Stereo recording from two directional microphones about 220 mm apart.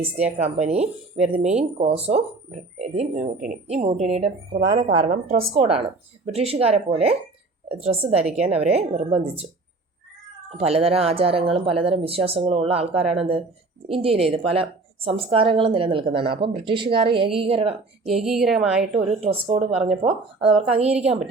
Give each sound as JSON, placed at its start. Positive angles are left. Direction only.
{"t": 0.3, "sound": "a woman's voice", "side_deg": -30}
{"t": 8.2, "sound": "a woman's voice", "side_deg": -5}
{"t": 8.4, "sound": "a woman's voice", "side_deg": -30}
{"t": 10.6, "sound": "a woman's voice", "side_deg": -25}
{"t": 18.1, "sound": "a woman's voice", "side_deg": 0}
{"t": 19.2, "sound": "a woman's voice", "side_deg": -30}